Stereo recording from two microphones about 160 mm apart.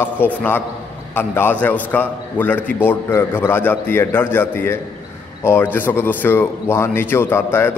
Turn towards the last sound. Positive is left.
turn(degrees=15)  # may be behind; listen again after turning